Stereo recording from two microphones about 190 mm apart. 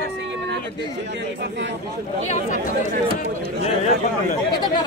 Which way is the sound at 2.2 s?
40° left (ahead or behind).